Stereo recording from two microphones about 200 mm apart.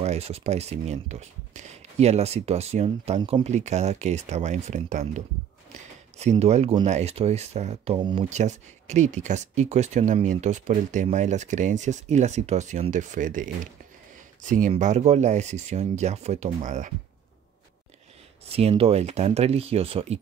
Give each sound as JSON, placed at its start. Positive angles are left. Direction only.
{"t": 0.0, "sound": "speech", "side_deg": -30}
{"t": 6.3, "sound": "speech", "side_deg": -30}
{"t": 18.4, "sound": "speech", "side_deg": -30}